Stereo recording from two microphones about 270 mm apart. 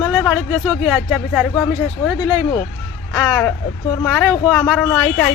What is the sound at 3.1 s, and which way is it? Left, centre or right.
Speech, centre.